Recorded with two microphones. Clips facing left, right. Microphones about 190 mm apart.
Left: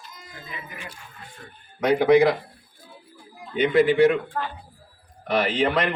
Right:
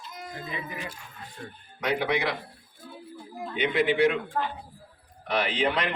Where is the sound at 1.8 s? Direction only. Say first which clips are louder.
Left 10 dB; 45° left (ahead or behind).